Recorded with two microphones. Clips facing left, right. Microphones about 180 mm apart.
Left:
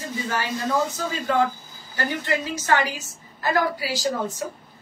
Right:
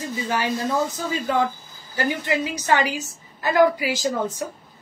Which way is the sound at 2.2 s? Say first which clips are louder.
Right 2 dB; 15° right (ahead or behind).